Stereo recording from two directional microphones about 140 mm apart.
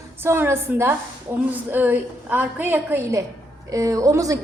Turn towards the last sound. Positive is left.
turn(degrees=-25)  # may be behind; listen again after turning